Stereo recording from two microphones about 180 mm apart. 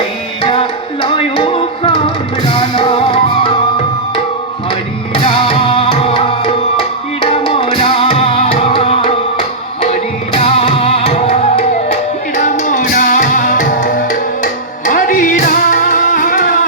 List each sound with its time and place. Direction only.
0.4 s music: 30° left (ahead or behind)
4.7 s music: 30° left (ahead or behind); by 16.6 s 50° left (ahead or behind)